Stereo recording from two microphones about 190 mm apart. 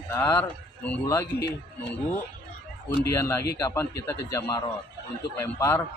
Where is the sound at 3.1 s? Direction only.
15° left (ahead or behind).